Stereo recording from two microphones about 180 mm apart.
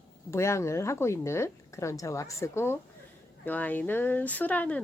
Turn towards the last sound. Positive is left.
turn(degrees=10)  # may be behind; listen again after turning